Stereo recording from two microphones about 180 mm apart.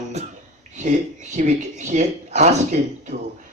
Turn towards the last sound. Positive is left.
turn(degrees=-40)  # may be behind; listen again after turning